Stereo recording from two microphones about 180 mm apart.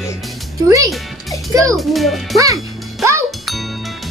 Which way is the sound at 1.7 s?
Centre (ahead or behind).